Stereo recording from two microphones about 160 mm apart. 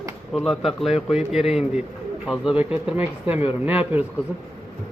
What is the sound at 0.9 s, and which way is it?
Speech, 40° left (ahead or behind).